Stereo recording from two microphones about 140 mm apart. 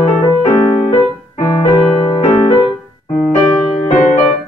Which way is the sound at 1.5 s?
30° left (ahead or behind).